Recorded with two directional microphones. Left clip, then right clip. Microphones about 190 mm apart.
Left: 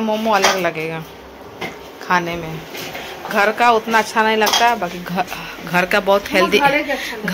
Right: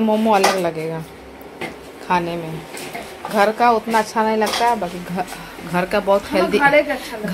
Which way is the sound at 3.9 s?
10° right (ahead or behind).